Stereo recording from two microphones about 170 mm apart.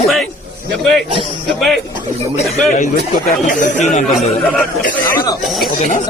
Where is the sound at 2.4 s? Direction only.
45° left (ahead or behind).